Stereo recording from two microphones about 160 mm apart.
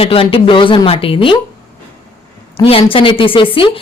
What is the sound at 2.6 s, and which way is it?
Speech, 35° left (ahead or behind).